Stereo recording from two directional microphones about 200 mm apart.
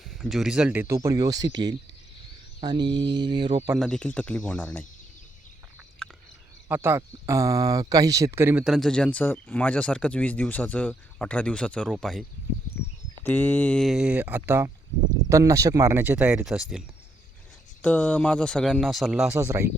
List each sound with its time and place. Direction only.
0.0 s speech: centre (ahead or behind); by 1.7 s 20° right (ahead or behind)
2.6 s mantra: 20° right (ahead or behind)
3.8 s speech: 5° left (ahead or behind)
6.0 s a sound: 5° left (ahead or behind)
6.7 s speech: 10° right (ahead or behind)
8.6 s speech: centre (ahead or behind)
13.2 s speech: 10° left (ahead or behind)
17.8 s speech: 5° left (ahead or behind)
19.4 s speech: 15° right (ahead or behind)